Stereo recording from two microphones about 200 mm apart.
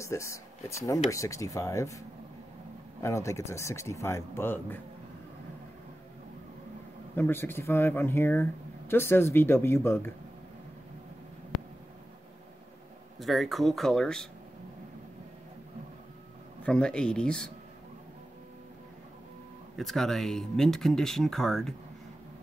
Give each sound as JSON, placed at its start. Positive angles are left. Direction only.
{"t": 0.0, "sound": "speech", "side_deg": 15}
{"t": 3.0, "sound": "speech", "side_deg": 15}
{"t": 7.2, "sound": "speech", "side_deg": 10}
{"t": 13.2, "sound": "speech", "side_deg": 0}
{"t": 16.6, "sound": "speech", "side_deg": 5}
{"t": 19.8, "sound": "speech", "side_deg": 0}